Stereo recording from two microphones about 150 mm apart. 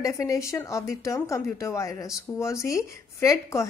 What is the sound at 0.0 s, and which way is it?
A woman's voice, 20° left (ahead or behind).